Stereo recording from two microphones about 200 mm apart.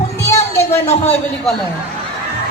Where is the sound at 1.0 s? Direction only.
10° left (ahead or behind).